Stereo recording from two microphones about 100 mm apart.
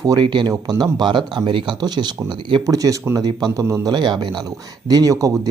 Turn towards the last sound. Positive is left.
turn(degrees=-35)  # may be behind; listen again after turning